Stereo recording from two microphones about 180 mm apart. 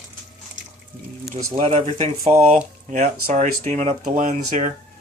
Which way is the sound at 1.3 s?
35° right (ahead or behind).